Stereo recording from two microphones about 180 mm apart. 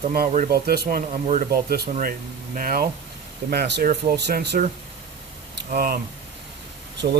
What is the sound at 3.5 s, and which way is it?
Speech, 65° right (ahead or behind).